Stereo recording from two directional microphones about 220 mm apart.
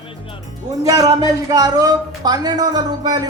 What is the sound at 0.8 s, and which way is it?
Speech, 15° right (ahead or behind).